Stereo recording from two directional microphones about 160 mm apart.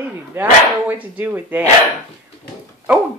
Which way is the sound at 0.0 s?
10° right (ahead or behind).